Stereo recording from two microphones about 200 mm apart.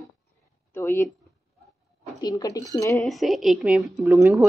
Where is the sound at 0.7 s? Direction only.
10° left (ahead or behind).